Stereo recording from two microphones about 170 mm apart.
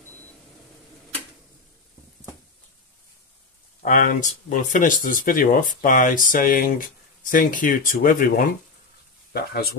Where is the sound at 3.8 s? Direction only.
55° left (ahead or behind).